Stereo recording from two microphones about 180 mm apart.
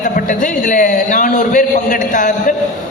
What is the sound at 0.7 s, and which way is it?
A man's voice, 45° left (ahead or behind).